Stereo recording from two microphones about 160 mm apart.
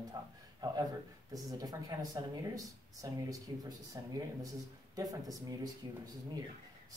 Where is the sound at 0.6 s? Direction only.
25° right (ahead or behind).